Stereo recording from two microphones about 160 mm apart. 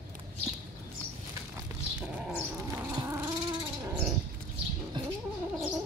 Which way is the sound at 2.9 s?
25° right (ahead or behind).